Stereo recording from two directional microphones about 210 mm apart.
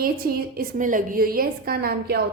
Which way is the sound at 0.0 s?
45° right (ahead or behind).